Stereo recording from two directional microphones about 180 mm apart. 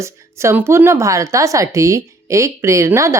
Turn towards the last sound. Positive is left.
turn(degrees=-15)  # may be behind; listen again after turning